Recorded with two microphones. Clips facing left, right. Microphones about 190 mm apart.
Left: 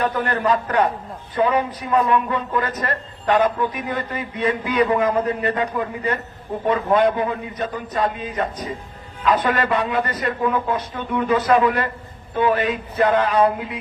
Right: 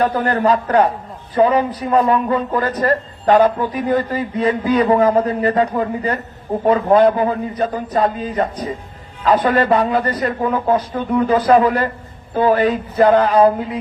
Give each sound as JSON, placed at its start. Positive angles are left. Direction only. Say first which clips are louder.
{"t": 0.0, "sound": "a man's voice", "louder": "right 5 dB", "side_deg": -35}